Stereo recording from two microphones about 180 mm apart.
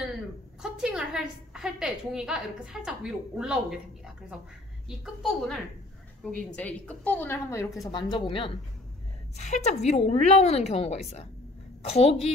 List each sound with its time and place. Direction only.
0.6 s a woman's voice: 5° right (ahead or behind); by 8.5 s 30° left (ahead or behind)
9.4 s a woman's voice: 40° left (ahead or behind)